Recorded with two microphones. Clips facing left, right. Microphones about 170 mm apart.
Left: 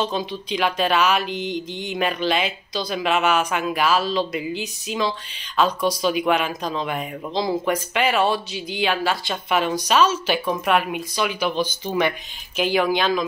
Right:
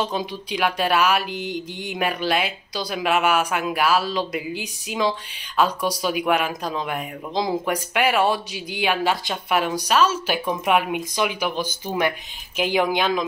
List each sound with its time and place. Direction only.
0.0 s speech: 10° right (ahead or behind)